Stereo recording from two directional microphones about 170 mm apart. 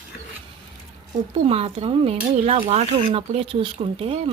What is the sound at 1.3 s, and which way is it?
Speech, 35° right (ahead or behind).